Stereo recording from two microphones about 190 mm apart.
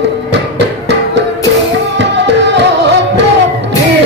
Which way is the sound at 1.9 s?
65° right (ahead or behind).